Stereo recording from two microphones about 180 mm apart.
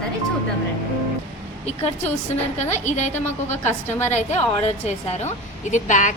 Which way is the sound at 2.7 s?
40° left (ahead or behind).